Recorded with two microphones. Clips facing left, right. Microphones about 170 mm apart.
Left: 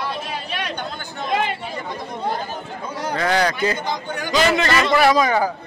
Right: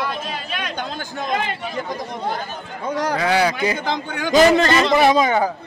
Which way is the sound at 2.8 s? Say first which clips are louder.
Right 6 dB; 80° right.